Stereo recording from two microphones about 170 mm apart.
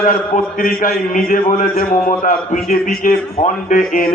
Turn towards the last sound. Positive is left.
turn(degrees=50)  # may be behind; listen again after turning